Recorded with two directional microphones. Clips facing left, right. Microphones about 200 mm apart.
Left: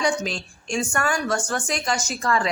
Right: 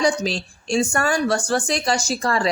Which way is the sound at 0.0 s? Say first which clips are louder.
Right 3 dB; 35° right (ahead or behind).